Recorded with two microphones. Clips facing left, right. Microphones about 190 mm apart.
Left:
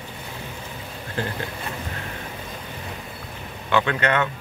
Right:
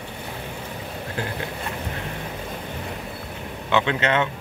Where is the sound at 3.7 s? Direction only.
20° right (ahead or behind).